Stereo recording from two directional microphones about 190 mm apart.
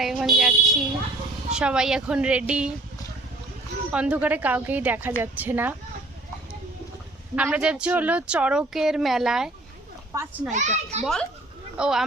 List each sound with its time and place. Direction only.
0.0 s a sound: centre (ahead or behind)
1.5 s speech: 5° right (ahead or behind)
3.9 s a woman's voice: 5° right (ahead or behind)
7.3 s speech: 5° right (ahead or behind)
10.1 s a woman's voice: 15° right (ahead or behind)
10.5 s a child's voice: 40° right (ahead or behind)
11.0 s speech: 5° left (ahead or behind)